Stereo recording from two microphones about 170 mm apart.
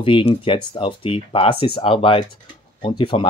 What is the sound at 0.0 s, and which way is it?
Speech, 30° left (ahead or behind).